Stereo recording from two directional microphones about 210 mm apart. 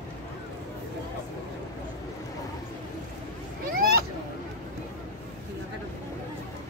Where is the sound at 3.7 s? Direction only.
45° right (ahead or behind).